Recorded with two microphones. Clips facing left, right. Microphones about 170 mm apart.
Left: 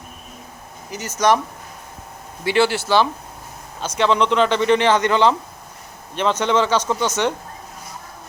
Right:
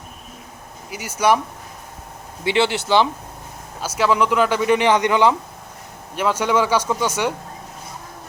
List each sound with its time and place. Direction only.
0.9 s speech: 10° right (ahead or behind)
2.4 s speech: 20° right (ahead or behind)
3.8 s speech: 5° right (ahead or behind)